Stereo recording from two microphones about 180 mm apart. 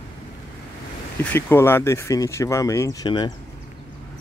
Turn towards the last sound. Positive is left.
turn(degrees=20)  # may be behind; listen again after turning